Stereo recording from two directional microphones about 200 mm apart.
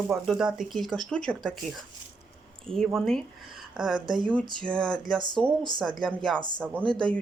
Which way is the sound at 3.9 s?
20° right (ahead or behind).